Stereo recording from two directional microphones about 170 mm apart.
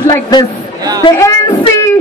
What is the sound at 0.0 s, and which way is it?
Speech, 25° left (ahead or behind).